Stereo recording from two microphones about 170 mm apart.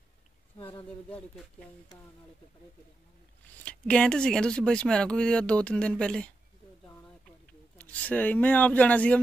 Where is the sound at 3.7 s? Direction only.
5° left (ahead or behind).